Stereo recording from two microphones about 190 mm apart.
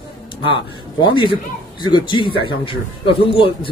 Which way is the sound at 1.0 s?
25° left (ahead or behind).